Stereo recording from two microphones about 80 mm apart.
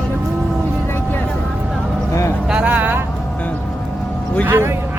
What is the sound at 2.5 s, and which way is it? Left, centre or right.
Vehicle, centre.